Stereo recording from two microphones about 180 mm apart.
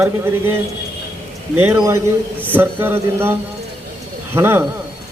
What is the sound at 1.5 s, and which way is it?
A man's voice, 15° right (ahead or behind).